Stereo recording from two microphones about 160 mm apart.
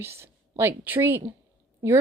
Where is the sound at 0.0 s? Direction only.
15° right (ahead or behind).